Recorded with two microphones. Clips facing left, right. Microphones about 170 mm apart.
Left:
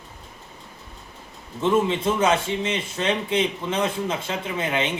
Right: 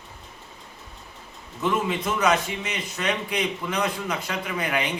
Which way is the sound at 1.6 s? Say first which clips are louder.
Left 4 dB; 25° left (ahead or behind).